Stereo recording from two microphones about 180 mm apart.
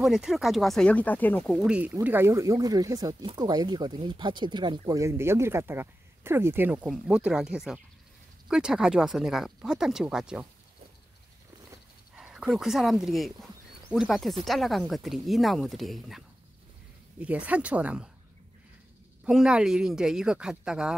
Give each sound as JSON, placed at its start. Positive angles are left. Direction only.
{"t": 0.0, "sound": "speech", "side_deg": 0}
{"t": 12.2, "sound": "speech", "side_deg": -5}
{"t": 19.2, "sound": "speech", "side_deg": -5}